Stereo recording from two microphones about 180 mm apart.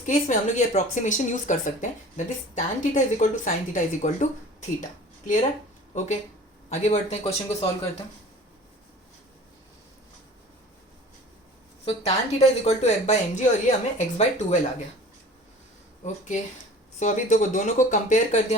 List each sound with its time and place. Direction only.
0.0 s a woman's voice: 45° left (ahead or behind)
11.9 s a woman's voice: 35° left (ahead or behind)
16.0 s a woman's voice: 40° left (ahead or behind)